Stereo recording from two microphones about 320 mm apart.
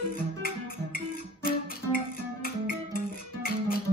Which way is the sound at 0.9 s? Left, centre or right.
Left.